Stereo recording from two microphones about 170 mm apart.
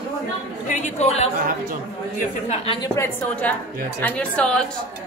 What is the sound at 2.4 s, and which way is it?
Speech, 30° left (ahead or behind).